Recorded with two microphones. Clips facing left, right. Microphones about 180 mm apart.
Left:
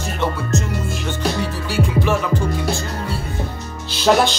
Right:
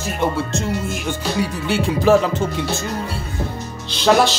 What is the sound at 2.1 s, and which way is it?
Music, 40° right (ahead or behind).